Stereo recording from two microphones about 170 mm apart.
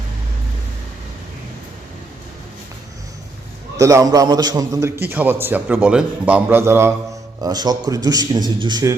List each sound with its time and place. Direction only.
3.8 s a man's voice: 20° right (ahead or behind)